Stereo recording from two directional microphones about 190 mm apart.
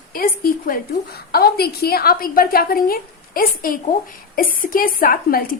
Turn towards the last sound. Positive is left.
turn(degrees=50)  # may be behind; listen again after turning